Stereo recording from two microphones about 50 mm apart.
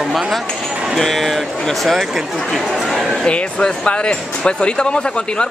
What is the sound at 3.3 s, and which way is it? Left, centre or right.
Speech, left.